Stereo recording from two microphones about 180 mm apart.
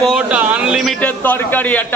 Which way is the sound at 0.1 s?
5° right (ahead or behind).